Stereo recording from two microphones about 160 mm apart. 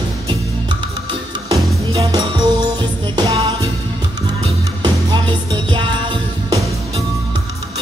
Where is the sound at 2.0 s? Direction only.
25° right (ahead or behind).